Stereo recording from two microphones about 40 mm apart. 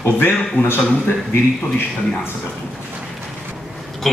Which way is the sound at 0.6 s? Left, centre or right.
Left.